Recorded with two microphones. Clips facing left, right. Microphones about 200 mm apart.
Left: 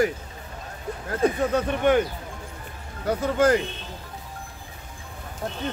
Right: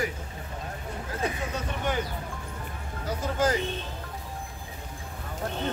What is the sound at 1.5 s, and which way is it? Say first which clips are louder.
Speech: left 10 dB; 60° left (ahead or behind).